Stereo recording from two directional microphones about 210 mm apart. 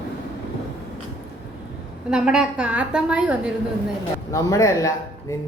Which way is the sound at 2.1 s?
5° right (ahead or behind).